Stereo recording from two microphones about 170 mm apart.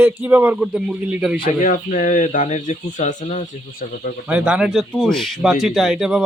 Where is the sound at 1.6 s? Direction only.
50° left (ahead or behind).